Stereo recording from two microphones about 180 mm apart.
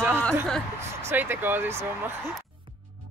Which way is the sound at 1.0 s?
10° right (ahead or behind).